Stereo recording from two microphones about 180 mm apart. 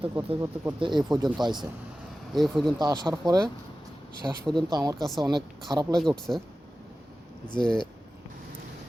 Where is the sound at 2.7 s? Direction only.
20° right (ahead or behind).